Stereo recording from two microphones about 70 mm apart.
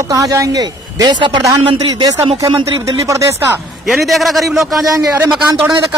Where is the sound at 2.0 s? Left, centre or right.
Right.